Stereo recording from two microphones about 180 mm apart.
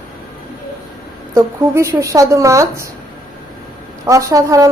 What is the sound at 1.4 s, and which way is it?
A woman's voice, 15° right (ahead or behind).